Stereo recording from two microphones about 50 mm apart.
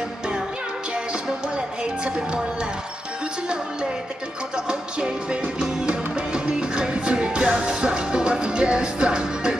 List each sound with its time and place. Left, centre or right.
2.0 s speech: centre
4.6 s music: centre